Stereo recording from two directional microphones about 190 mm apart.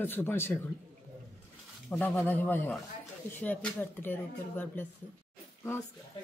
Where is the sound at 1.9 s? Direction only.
10° left (ahead or behind).